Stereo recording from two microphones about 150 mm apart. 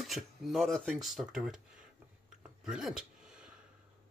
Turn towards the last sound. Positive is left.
turn(degrees=-5)  # may be behind; listen again after turning